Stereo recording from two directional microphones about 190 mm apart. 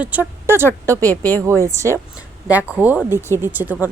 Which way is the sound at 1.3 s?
15° right (ahead or behind).